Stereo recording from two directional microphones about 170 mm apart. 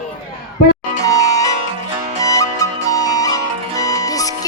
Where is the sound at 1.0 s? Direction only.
20° left (ahead or behind).